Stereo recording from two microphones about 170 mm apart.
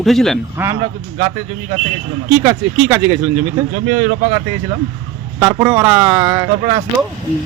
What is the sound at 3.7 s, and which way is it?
Speech, 40° right (ahead or behind).